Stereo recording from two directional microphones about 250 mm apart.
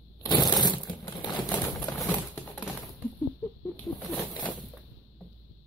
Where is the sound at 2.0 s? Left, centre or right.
Centre.